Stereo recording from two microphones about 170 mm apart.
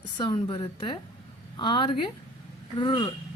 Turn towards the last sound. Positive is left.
turn(degrees=30)  # may be behind; listen again after turning